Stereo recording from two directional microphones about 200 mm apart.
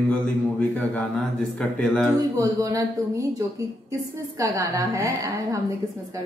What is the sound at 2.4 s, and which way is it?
A woman's voice, 15° right (ahead or behind).